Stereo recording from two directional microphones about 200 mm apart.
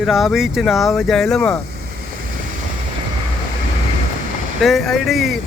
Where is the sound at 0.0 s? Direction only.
Centre (ahead or behind).